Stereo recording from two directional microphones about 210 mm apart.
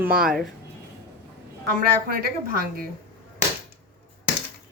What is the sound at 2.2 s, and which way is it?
Speech, 45° right (ahead or behind).